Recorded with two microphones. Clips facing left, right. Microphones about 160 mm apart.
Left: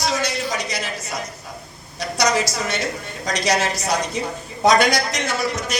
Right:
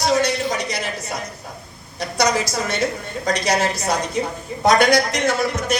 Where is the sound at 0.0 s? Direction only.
60° right (ahead or behind).